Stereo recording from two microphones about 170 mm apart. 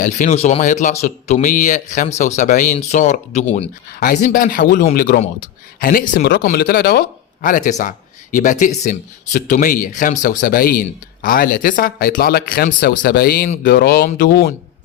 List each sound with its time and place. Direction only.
0.0 s speech: 45° left (ahead or behind); by 7.0 s 65° left (ahead or behind)
7.4 s speech: 50° left (ahead or behind); by 14.5 s 65° left (ahead or behind)